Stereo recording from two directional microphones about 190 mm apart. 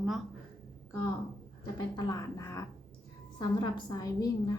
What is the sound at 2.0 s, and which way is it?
A woman's voice, 20° left (ahead or behind).